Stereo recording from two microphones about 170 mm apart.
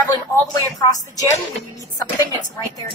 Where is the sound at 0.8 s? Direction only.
20° left (ahead or behind).